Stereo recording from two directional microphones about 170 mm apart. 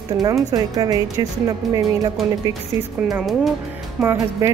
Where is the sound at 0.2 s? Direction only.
20° right (ahead or behind).